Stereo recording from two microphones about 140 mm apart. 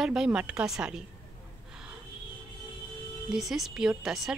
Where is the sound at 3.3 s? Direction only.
Centre (ahead or behind).